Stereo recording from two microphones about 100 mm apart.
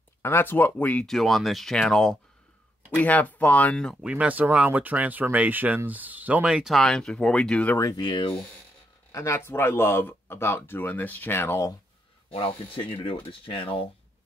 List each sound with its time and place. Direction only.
0.2 s speech: 20° left (ahead or behind)
1.0 s speech: centre (ahead or behind)
4.0 s speech: 10° right (ahead or behind)
6.8 s speech: 5° left (ahead or behind)
7.8 s speech: 45° left (ahead or behind)
9.1 s speech: 30° left (ahead or behind)
12.3 s speech: 70° left (ahead or behind)